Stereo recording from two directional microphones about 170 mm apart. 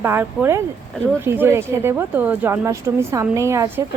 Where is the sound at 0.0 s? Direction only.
15° right (ahead or behind).